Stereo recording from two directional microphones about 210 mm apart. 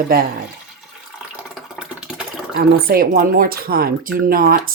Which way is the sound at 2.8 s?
45° right (ahead or behind).